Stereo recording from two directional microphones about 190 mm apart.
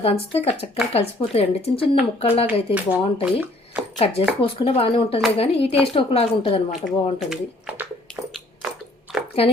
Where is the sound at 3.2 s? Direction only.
10° right (ahead or behind).